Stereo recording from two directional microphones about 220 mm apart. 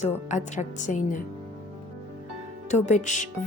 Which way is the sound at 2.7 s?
35° left (ahead or behind).